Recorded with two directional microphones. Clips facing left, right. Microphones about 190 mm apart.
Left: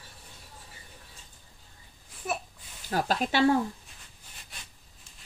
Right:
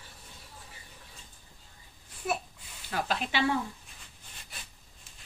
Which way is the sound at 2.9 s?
40° left (ahead or behind).